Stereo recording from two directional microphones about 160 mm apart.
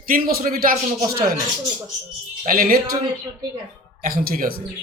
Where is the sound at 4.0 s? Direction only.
60° right (ahead or behind).